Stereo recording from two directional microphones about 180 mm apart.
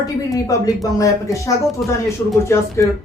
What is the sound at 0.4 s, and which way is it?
Speech, 20° left (ahead or behind).